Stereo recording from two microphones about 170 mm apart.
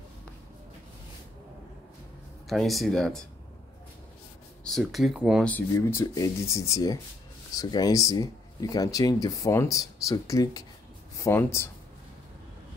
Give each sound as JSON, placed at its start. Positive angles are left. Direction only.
{"t": 2.4, "sound": "speech", "side_deg": 0}
{"t": 4.6, "sound": "speech", "side_deg": 0}
{"t": 5.8, "sound": "speech", "side_deg": 20}